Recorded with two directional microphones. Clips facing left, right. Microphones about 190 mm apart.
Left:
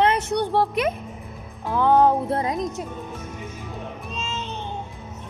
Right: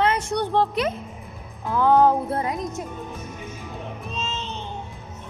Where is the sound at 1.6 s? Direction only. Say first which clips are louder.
Even; 20° left (ahead or behind).